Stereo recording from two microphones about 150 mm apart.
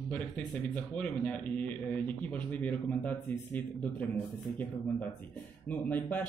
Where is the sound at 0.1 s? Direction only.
10° left (ahead or behind).